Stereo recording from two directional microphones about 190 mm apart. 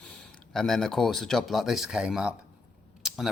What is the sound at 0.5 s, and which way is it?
Speech, centre (ahead or behind).